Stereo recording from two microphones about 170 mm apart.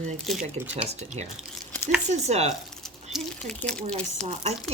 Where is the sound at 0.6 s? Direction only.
40° right (ahead or behind).